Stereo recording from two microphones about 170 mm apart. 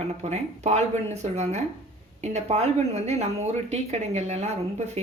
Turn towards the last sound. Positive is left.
turn(degrees=-40)  # may be behind; listen again after turning